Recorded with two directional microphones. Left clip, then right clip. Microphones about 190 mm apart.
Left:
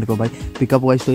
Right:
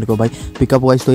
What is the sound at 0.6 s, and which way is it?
Speech, 35° right (ahead or behind).